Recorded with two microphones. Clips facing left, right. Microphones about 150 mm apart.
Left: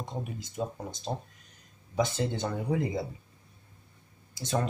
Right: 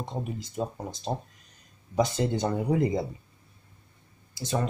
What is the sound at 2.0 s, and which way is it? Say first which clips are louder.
Speech: right 4 dB; 35° right (ahead or behind).